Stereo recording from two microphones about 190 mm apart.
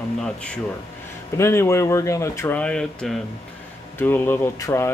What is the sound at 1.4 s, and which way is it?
Speech, 15° left (ahead or behind).